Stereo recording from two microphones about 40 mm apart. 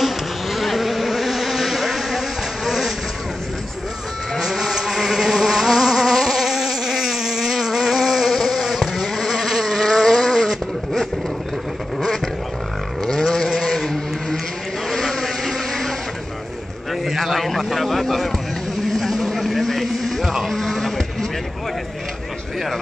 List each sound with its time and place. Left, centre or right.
0.0 s vehicle: centre
4.4 s music: centre
4.7 s insect: centre
13.0 s a sound: centre
13.5 s vehicle: centre
16.9 s a sound: centre
18.9 s vehicle: centre
20.4 s sheep: centre